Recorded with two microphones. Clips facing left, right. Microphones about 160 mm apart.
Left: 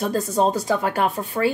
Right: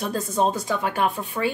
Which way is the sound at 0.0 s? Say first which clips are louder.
Left 3 dB; 35° left (ahead or behind).